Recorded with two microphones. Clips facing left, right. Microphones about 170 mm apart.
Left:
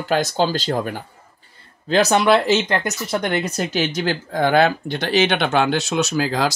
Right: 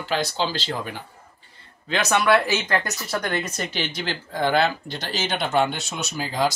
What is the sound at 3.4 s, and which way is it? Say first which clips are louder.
Speech: left 7 dB; 45° left (ahead or behind).